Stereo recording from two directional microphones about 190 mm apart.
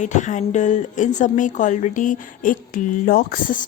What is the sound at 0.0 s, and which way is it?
A woman's voice, 40° left (ahead or behind).